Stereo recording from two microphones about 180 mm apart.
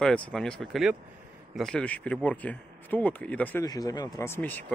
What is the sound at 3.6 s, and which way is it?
Speech, 20° left (ahead or behind).